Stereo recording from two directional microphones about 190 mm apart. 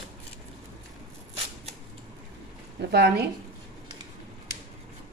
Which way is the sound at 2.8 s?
60° right (ahead or behind).